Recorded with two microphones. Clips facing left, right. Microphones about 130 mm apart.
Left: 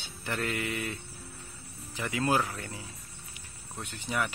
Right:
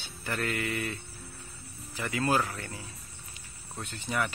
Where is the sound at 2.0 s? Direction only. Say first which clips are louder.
Even; 20° left (ahead or behind).